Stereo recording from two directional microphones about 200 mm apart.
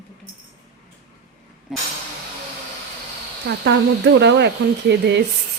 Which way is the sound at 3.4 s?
60° right (ahead or behind).